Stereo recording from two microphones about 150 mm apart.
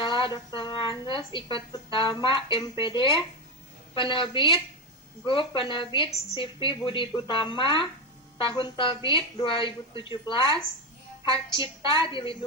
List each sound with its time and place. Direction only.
0.0 s a woman's voice: 35° left (ahead or behind)